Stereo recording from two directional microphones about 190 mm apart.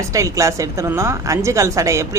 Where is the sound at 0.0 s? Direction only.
15° right (ahead or behind).